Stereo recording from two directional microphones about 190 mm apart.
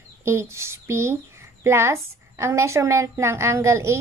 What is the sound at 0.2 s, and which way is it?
A woman's voice, 15° right (ahead or behind).